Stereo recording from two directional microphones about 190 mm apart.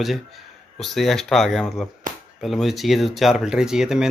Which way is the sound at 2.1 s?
45° right (ahead or behind).